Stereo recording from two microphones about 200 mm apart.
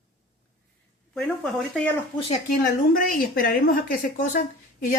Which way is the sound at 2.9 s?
45° left (ahead or behind).